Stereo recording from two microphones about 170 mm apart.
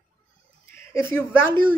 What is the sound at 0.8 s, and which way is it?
Speech, 15° left (ahead or behind).